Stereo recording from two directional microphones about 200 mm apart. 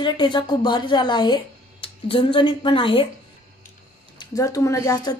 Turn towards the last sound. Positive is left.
turn(degrees=15)  # may be behind; listen again after turning